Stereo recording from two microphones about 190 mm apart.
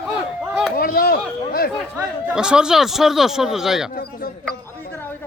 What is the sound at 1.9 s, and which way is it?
Speech, 5° right (ahead or behind).